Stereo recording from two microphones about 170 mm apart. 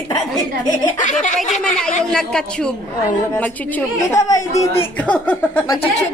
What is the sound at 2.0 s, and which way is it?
A woman's voice, 5° left (ahead or behind).